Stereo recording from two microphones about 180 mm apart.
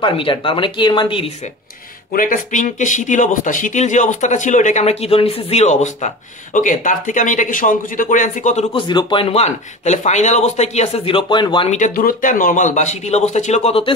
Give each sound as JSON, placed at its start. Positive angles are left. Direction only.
{"t": 0.0, "sound": "speech", "side_deg": 30}
{"t": 2.1, "sound": "speech", "side_deg": 50}
{"t": 8.7, "sound": "speech", "side_deg": 25}
{"t": 11.7, "sound": "speech", "side_deg": 45}